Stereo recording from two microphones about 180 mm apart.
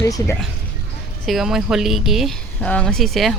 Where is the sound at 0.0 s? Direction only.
15° left (ahead or behind).